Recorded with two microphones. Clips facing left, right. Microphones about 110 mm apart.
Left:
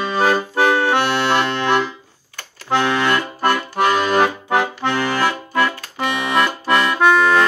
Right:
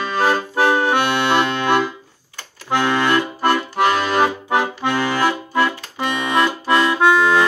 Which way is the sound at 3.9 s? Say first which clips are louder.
Left 3 dB; centre (ahead or behind).